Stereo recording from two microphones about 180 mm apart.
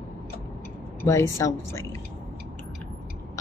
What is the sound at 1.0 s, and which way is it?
Speech, 15° left (ahead or behind).